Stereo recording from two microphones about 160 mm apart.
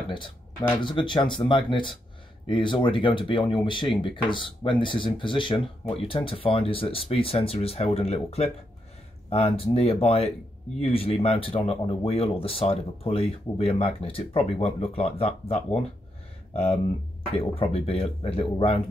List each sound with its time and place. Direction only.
0.1 s speech: 30° left (ahead or behind)
17.3 s speech: 35° left (ahead or behind)